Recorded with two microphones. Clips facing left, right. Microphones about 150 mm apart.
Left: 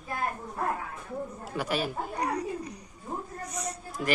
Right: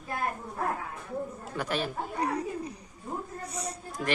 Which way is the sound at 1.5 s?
10° left (ahead or behind).